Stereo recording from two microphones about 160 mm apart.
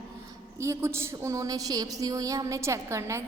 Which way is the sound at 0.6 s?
15° right (ahead or behind).